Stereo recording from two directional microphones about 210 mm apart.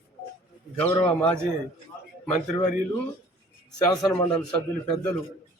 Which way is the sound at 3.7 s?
20° left (ahead or behind).